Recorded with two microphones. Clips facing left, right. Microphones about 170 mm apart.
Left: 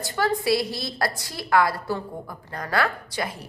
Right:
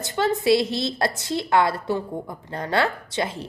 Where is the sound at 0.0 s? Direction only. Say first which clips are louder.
Right 2 dB; 20° right (ahead or behind).